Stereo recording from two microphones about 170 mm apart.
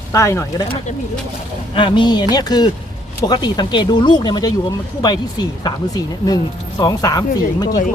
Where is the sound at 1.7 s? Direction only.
30° left (ahead or behind).